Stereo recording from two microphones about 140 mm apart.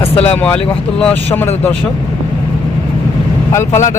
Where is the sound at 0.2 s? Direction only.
10° left (ahead or behind).